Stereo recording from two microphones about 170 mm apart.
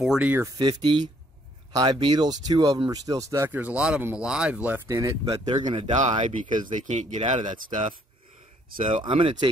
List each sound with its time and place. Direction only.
0.0 s speech: 5° right (ahead or behind)
0.6 s speech: 25° right (ahead or behind)
5.3 s speech: 30° right (ahead or behind)
5.9 s speech: 45° right (ahead or behind)
8.7 s speech: 30° right (ahead or behind)